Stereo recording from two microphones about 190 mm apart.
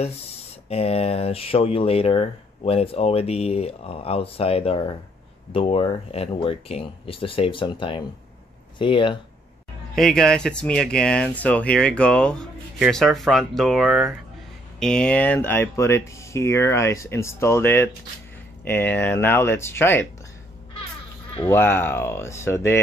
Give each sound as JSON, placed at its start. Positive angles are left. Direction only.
{"t": 0.7, "sound": "speech", "side_deg": 35}
{"t": 9.9, "sound": "speech", "side_deg": 5}
{"t": 21.4, "sound": "speech", "side_deg": 10}